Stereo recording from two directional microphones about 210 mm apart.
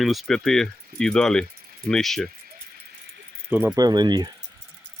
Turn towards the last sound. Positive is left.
turn(degrees=-20)  # may be behind; listen again after turning